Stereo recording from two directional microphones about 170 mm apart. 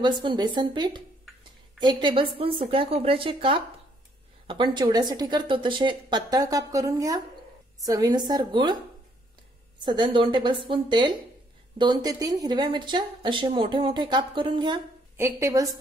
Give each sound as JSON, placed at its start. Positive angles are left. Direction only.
{"t": 0.0, "sound": "speech", "side_deg": -25}
{"t": 9.8, "sound": "speech", "side_deg": -30}
{"t": 15.1, "sound": "a woman's voice", "side_deg": -15}